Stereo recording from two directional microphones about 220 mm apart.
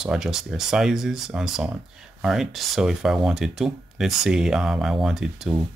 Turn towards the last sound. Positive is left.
turn(degrees=0)  # may be behind; listen again after turning